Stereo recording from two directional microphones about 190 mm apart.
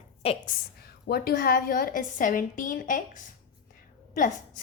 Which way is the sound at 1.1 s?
55° left (ahead or behind).